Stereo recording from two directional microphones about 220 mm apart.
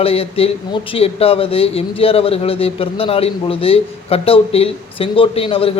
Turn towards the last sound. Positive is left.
turn(degrees=25)  # may be behind; listen again after turning